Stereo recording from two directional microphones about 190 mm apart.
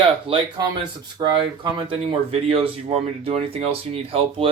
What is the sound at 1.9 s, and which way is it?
Speech, 30° right (ahead or behind).